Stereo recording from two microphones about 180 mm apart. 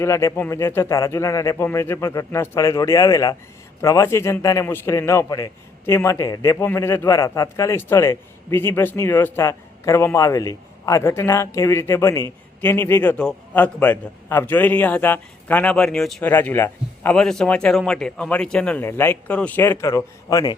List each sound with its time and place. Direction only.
0.0 s a man's voice: 15° left (ahead or behind)